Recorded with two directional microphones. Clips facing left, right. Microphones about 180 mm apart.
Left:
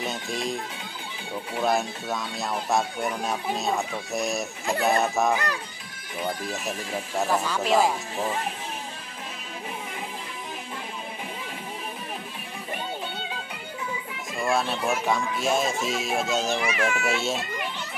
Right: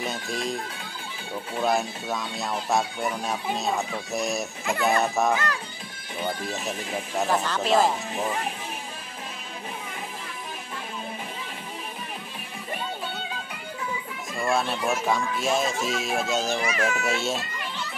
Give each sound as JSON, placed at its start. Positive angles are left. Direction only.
{"t": 0.0, "sound": "speech", "side_deg": 0}
{"t": 5.3, "sound": "speech", "side_deg": 15}
{"t": 6.2, "sound": "speech", "side_deg": 0}
{"t": 6.7, "sound": "speech", "side_deg": -20}
{"t": 7.2, "sound": "speech", "side_deg": 5}
{"t": 14.4, "sound": "speech", "side_deg": 0}
{"t": 16.6, "sound": "speech", "side_deg": -40}
{"t": 17.0, "sound": "speech", "side_deg": 0}